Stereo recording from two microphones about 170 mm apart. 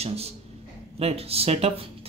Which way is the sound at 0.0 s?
35° right (ahead or behind).